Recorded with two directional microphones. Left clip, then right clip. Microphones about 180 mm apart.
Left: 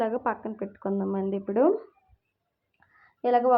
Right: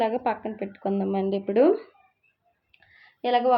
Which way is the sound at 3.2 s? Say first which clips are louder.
Even; 5° left (ahead or behind).